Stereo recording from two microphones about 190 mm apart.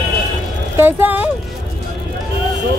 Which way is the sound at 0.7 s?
10° right (ahead or behind).